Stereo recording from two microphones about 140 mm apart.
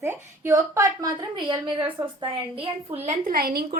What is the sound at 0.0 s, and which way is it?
A woman's voice, 15° right (ahead or behind).